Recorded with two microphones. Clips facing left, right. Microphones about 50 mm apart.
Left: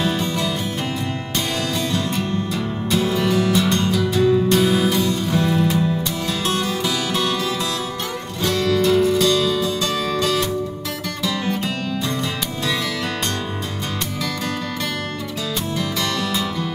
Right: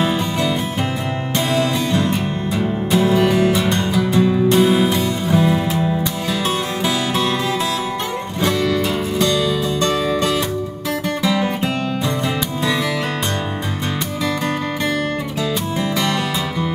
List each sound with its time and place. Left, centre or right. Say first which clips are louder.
0.0 s music: right 3 dB; right
8.4 s music: right 1 dB; centre
15.8 s music: right 4 dB; right